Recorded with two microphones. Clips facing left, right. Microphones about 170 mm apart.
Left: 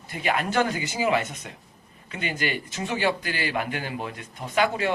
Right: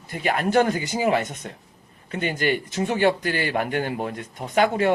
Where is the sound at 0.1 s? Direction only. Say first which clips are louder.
Right 4 dB; 45° right (ahead or behind).